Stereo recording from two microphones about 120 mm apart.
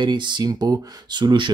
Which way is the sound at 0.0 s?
40° right (ahead or behind).